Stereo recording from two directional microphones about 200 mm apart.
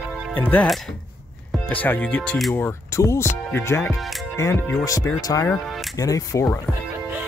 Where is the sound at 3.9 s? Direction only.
Centre (ahead or behind).